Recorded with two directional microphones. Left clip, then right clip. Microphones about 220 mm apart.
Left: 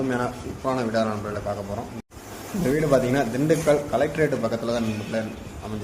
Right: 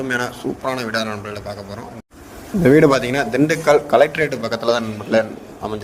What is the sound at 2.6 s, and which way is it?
Speech, 40° right (ahead or behind).